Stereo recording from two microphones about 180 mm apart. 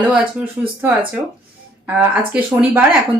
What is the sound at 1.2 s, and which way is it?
Speech, 15° right (ahead or behind).